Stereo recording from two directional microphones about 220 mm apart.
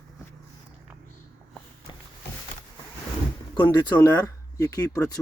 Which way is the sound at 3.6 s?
15° left (ahead or behind).